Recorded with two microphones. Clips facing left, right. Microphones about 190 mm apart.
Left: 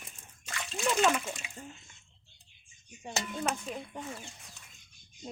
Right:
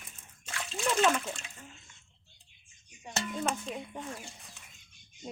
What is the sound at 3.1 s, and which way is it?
Speech, 5° left (ahead or behind).